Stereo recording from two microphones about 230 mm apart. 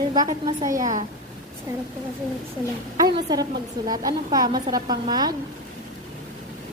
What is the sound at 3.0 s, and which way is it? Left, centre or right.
A woman's voice, centre.